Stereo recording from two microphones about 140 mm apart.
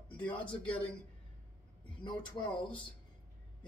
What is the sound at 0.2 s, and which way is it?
Speech, 10° left (ahead or behind).